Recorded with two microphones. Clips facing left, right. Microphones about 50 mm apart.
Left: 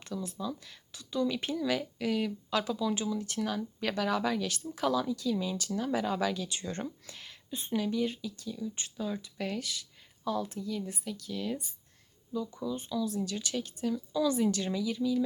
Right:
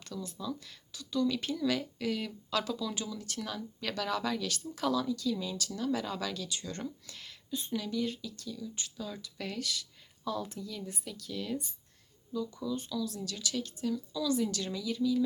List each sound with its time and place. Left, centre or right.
0.0 s speech: centre
7.1 s speech: centre
7.5 s speech: left; by 11.6 s centre
12.3 s speech: centre
13.9 s speech: left; by 15.2 s centre